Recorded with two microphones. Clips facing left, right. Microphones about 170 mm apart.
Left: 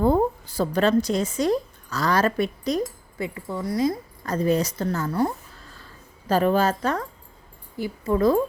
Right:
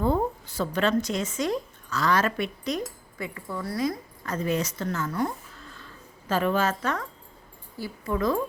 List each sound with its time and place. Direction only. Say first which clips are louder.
0.0 s a woman's voice: left 5 dB; 40° left (ahead or behind)